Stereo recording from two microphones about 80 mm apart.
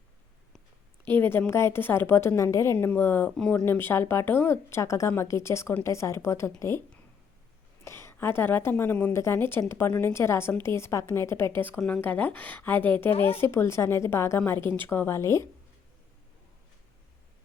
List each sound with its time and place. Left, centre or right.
1.0 s speech: left
2.8 s speech: left
3.3 s speech: centre
3.7 s speech: left
7.9 s a woman's voice: left